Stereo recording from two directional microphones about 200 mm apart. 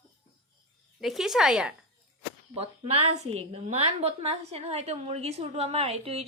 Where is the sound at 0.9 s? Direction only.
Centre (ahead or behind).